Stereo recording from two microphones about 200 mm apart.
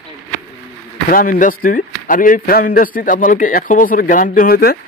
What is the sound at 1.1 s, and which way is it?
Speech, 45° left (ahead or behind).